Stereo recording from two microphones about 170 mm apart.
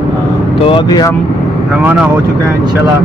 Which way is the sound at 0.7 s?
25° left (ahead or behind).